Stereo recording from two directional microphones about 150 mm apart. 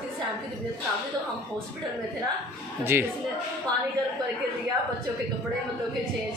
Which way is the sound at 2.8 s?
15° right (ahead or behind).